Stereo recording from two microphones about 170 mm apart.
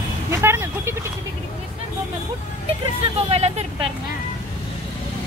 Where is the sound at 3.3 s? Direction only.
40° right (ahead or behind).